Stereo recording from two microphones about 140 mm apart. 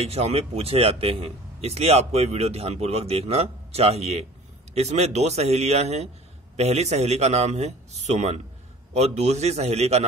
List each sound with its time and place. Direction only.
0.0 s a man's voice: 50° right (ahead or behind)